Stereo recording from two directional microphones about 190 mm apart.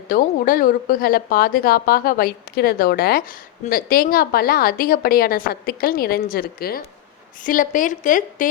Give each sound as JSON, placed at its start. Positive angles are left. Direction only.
{"t": 0.1, "sound": "a woman's voice", "side_deg": 50}